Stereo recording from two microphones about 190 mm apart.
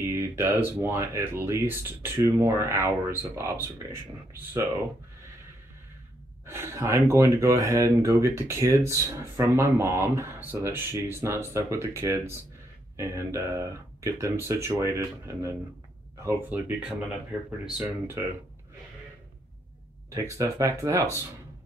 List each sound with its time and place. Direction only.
0.0 s speech: 15° right (ahead or behind)
6.4 s speech: 15° right (ahead or behind)
17.7 s speech: 10° right (ahead or behind)
20.1 s speech: 15° right (ahead or behind)